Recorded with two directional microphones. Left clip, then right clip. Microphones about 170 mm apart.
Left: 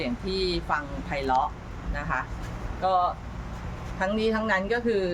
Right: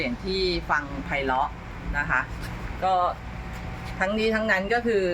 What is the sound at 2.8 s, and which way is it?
A woman's voice, 5° left (ahead or behind).